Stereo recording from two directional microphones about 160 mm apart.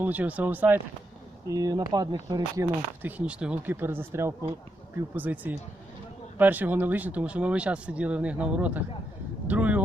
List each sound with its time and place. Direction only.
0.0 s speech: 10° right (ahead or behind)